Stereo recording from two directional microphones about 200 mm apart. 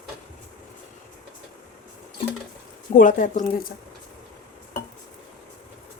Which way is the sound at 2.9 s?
40° left (ahead or behind).